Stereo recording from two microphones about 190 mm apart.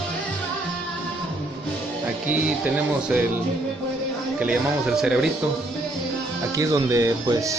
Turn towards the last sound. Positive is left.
turn(degrees=-15)  # may be behind; listen again after turning